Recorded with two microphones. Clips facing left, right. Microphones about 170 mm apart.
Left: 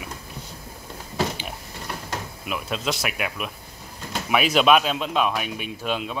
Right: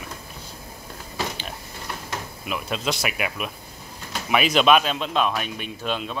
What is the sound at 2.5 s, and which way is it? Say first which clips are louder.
Speech: even; centre (ahead or behind).